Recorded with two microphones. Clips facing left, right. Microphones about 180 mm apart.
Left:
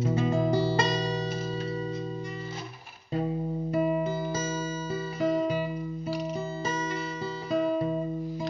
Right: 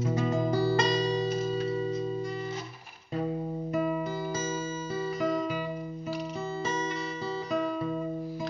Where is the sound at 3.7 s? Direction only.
30° left (ahead or behind).